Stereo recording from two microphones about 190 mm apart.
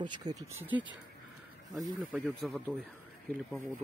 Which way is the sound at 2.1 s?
Centre (ahead or behind).